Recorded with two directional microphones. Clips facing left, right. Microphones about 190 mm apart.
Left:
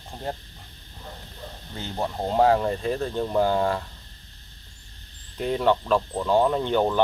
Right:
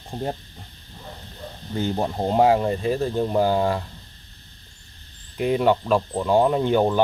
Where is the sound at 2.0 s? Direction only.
20° right (ahead or behind).